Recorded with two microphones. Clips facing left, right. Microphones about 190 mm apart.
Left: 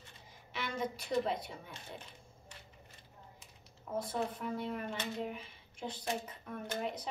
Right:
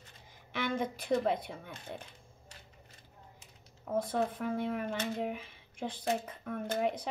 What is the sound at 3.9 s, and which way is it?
Speech, 55° right (ahead or behind).